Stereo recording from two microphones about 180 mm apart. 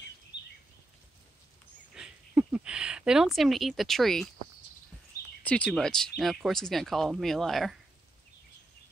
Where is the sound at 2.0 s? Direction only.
5° right (ahead or behind).